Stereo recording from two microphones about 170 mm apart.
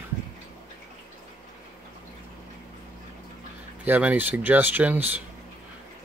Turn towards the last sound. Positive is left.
turn(degrees=-10)  # may be behind; listen again after turning